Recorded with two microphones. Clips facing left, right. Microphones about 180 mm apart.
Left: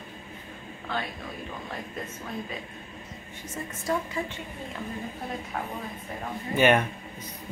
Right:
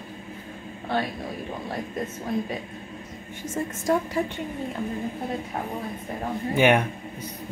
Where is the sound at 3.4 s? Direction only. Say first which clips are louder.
Right 6 dB; 45° right (ahead or behind).